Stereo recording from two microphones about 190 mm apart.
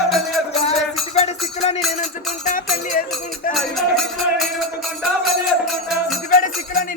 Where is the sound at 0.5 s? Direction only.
35° left (ahead or behind).